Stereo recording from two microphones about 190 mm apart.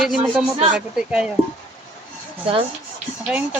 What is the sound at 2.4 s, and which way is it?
Speech, 30° right (ahead or behind).